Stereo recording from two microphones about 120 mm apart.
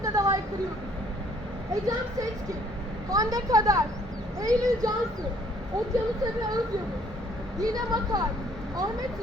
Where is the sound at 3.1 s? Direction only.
30° right (ahead or behind).